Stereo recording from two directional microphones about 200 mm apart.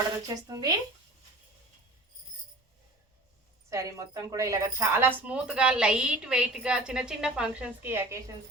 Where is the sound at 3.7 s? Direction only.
15° right (ahead or behind).